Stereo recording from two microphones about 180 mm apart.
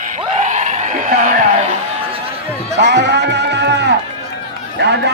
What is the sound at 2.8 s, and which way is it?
Music, 70° right (ahead or behind).